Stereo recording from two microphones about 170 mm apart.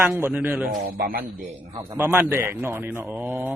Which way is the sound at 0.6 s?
55° right (ahead or behind).